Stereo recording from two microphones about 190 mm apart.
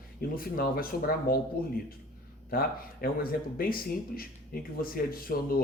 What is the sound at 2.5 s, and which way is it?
Speech, 50° left (ahead or behind).